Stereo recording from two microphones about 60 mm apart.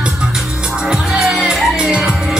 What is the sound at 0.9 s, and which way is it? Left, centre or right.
Music, centre.